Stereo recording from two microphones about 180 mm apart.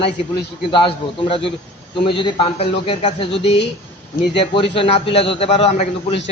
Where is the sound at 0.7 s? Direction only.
30° left (ahead or behind).